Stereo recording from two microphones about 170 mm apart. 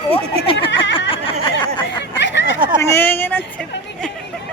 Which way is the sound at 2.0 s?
90° left.